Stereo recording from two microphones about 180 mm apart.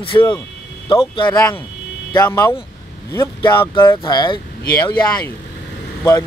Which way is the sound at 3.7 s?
25° left (ahead or behind).